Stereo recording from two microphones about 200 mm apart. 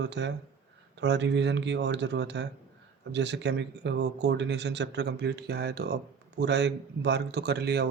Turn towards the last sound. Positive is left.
turn(degrees=-55)  # may be behind; listen again after turning